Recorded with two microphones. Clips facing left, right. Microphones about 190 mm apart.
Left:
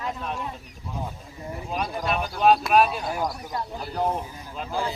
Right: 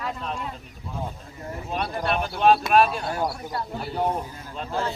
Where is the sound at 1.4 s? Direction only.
10° left (ahead or behind).